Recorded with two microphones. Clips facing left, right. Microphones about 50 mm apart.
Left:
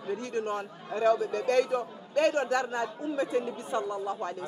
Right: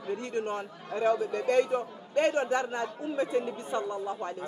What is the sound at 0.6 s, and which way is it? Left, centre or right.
Speech, left.